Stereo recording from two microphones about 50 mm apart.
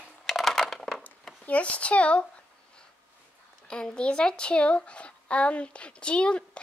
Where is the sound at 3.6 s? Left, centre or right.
Centre.